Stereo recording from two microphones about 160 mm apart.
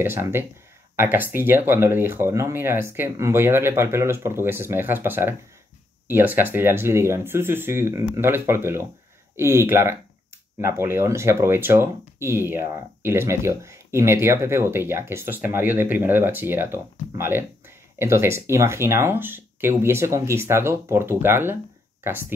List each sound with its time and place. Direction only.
0.0 s speech: 15° right (ahead or behind)